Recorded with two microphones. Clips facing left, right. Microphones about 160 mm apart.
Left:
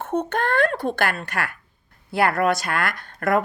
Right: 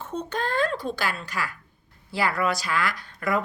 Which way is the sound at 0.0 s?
55° left (ahead or behind).